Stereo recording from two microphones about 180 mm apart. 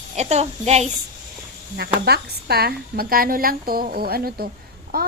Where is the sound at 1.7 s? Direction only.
65° right (ahead or behind).